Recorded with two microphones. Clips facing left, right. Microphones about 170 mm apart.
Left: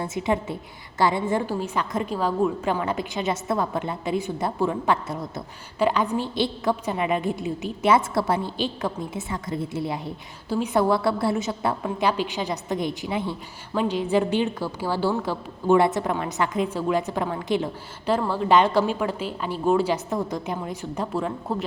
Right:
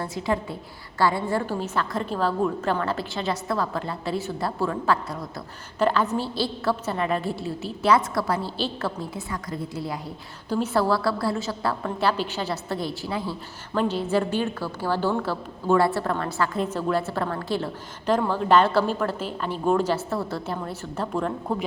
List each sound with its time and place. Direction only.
0.0 s a woman's voice: 20° left (ahead or behind); by 21.3 s 5° left (ahead or behind)